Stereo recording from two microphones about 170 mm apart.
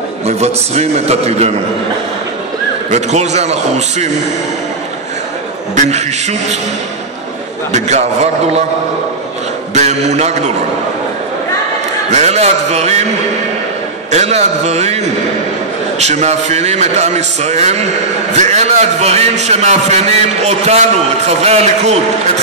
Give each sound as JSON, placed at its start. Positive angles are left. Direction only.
{"t": 0.4, "sound": "a man's voice", "side_deg": -40}
{"t": 2.9, "sound": "a man's voice", "side_deg": -40}
{"t": 5.8, "sound": "a man's voice", "side_deg": -40}
{"t": 7.7, "sound": "a man's voice", "side_deg": -40}
{"t": 9.8, "sound": "a man's voice", "side_deg": -40}
{"t": 12.1, "sound": "a man's voice", "side_deg": -40}
{"t": 14.1, "sound": "a man's voice", "side_deg": -40}